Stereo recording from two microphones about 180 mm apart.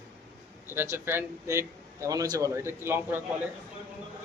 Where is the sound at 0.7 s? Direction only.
15° right (ahead or behind).